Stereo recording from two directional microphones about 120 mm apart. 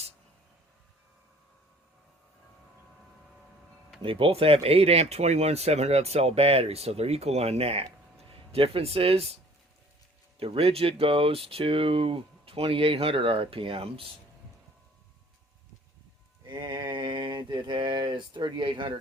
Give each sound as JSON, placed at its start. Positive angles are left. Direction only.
{"t": 4.0, "sound": "speech", "side_deg": -50}
{"t": 10.4, "sound": "speech", "side_deg": -55}
{"t": 16.5, "sound": "a sound", "side_deg": -40}